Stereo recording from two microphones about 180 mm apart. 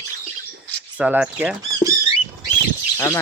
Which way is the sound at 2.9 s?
15° left (ahead or behind).